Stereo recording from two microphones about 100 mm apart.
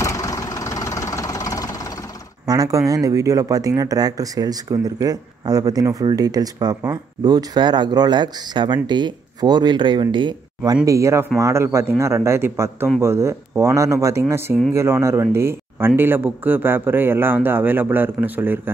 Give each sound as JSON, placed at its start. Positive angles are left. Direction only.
{"t": 0.0, "sound": "vehicle", "side_deg": 35}
{"t": 2.4, "sound": "speech", "side_deg": -40}
{"t": 10.9, "sound": "speech", "side_deg": -30}